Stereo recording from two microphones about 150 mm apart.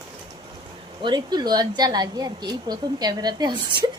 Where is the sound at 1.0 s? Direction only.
30° right (ahead or behind).